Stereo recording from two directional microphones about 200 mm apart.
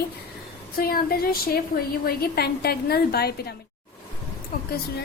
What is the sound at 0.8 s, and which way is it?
A woman's voice, 50° left (ahead or behind).